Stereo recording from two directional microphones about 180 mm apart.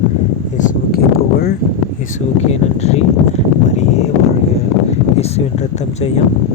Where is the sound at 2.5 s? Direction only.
35° left (ahead or behind).